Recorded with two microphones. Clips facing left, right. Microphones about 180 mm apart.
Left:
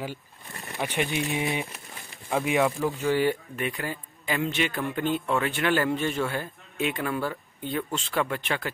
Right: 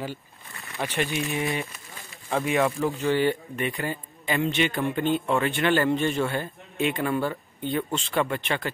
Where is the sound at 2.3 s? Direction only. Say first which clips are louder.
Even; 5° left (ahead or behind).